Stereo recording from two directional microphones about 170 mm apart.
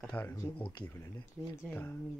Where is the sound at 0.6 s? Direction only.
25° left (ahead or behind).